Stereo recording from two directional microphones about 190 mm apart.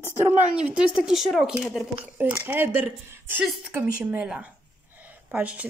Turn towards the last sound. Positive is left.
turn(degrees=-10)  # may be behind; listen again after turning